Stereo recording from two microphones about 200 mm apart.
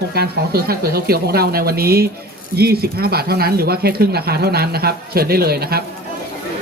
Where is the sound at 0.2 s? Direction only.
50° right (ahead or behind).